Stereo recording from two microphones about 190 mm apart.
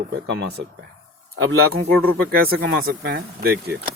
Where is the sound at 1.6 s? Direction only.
55° right (ahead or behind).